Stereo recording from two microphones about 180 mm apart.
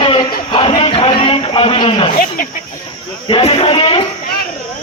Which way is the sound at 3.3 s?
35° left (ahead or behind).